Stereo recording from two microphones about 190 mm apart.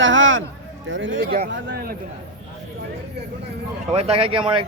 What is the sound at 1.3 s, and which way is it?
Speech, 55° right (ahead or behind).